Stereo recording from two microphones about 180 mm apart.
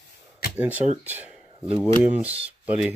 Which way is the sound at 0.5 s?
10° right (ahead or behind).